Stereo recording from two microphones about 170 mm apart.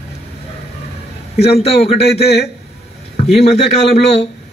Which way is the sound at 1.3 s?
35° left (ahead or behind).